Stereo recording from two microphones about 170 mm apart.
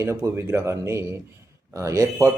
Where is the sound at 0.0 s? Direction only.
15° right (ahead or behind).